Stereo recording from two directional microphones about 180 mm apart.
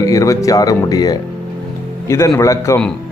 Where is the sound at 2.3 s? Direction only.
15° left (ahead or behind).